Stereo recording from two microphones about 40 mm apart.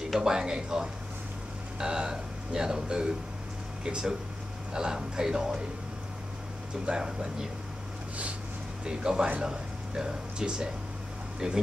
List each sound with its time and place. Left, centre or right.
0.2 s speech: centre
6.9 s speech: centre
8.8 s speech: centre